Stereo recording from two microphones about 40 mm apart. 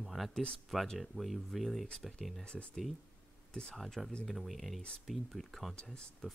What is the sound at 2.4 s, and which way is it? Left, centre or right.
Speech, left.